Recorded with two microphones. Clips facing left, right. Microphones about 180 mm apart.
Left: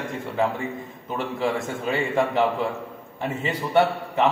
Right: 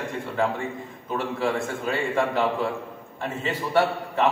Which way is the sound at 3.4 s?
20° left (ahead or behind).